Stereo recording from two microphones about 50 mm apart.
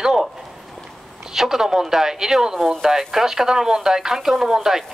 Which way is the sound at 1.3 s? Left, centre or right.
Centre.